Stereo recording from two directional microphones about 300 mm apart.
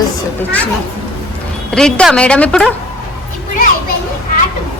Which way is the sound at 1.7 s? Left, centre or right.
Centre.